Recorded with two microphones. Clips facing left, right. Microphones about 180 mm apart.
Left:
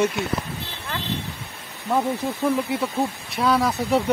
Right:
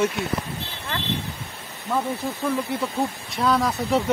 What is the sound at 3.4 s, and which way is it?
Speech, centre (ahead or behind).